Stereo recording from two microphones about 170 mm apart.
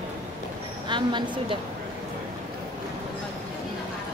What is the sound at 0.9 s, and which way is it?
Speech, 25° right (ahead or behind).